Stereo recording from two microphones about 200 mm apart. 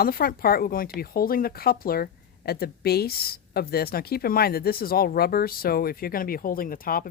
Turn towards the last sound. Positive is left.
turn(degrees=45)  # may be behind; listen again after turning